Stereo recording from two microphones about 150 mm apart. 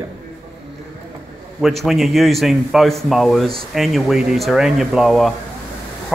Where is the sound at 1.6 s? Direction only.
Centre (ahead or behind).